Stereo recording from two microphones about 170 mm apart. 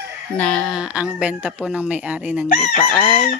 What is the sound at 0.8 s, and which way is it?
Speech, 5° right (ahead or behind).